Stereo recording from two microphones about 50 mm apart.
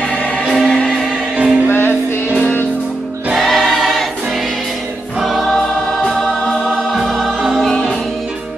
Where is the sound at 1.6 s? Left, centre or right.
Left.